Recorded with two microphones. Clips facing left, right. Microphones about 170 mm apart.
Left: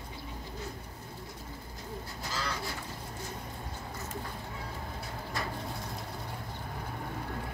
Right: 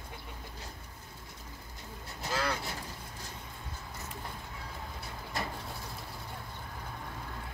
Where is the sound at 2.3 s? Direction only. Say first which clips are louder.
Right 5 dB; 55° right (ahead or behind).